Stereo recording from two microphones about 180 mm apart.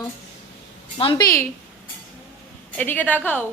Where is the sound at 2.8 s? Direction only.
10° left (ahead or behind).